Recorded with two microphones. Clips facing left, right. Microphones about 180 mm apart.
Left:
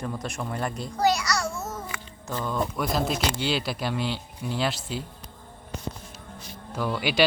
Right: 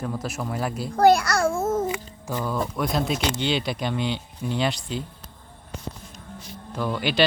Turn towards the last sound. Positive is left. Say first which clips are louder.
# right 1 dB
turn(degrees=10)  # may be behind; listen again after turning